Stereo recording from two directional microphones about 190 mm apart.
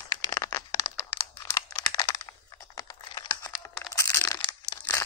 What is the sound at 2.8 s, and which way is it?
Computer keyboard, 20° left (ahead or behind).